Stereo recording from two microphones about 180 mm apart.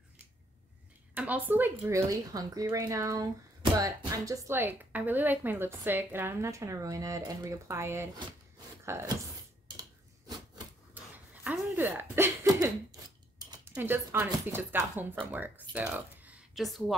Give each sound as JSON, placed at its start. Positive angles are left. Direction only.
{"t": 1.1, "sound": "speech", "side_deg": -10}
{"t": 9.8, "sound": "a sound", "side_deg": -20}
{"t": 11.4, "sound": "throat clearing", "side_deg": -10}
{"t": 13.7, "sound": "speech", "side_deg": -10}